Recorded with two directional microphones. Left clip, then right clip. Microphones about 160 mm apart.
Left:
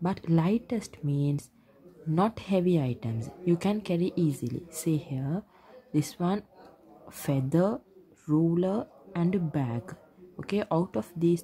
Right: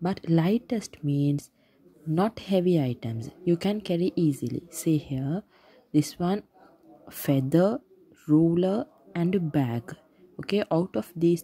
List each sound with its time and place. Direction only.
0.0 s a woman's voice: 25° right (ahead or behind)